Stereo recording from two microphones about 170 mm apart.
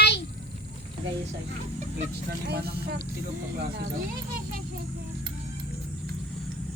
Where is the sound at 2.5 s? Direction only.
70° right (ahead or behind).